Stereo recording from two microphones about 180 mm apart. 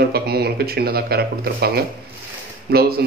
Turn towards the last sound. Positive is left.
turn(degrees=-60)  # may be behind; listen again after turning